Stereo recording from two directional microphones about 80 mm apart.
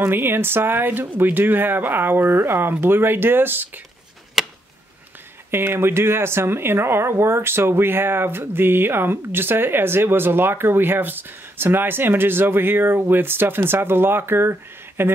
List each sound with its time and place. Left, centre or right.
0.0 s speech: right
4.4 s a sound: centre
5.5 s speech: right